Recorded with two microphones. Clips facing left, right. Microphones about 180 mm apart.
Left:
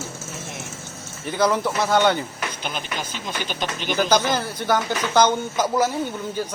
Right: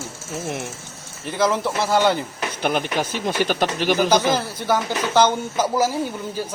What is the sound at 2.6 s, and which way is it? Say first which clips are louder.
Speech: right 11 dB; 60° right (ahead or behind).